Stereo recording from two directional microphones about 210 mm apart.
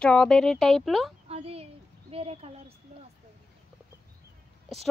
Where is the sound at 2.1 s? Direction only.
30° right (ahead or behind).